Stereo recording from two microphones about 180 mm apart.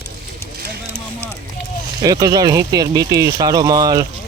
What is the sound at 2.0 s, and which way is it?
Speech, 20° right (ahead or behind).